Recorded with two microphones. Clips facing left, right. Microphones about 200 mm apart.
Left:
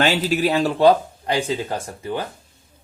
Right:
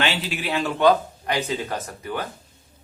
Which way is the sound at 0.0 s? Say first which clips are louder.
Left 7 dB; 40° left (ahead or behind).